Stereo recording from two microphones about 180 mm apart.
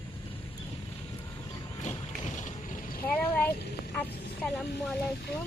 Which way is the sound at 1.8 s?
40° left (ahead or behind).